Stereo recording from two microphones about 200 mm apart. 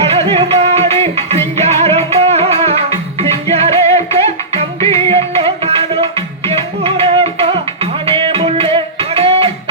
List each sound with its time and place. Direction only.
0.1 s music: 30° right (ahead or behind)